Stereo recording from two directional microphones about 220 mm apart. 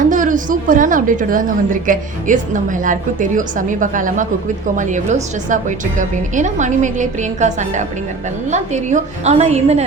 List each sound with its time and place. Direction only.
0.0 s a woman's voice: 35° right (ahead or behind)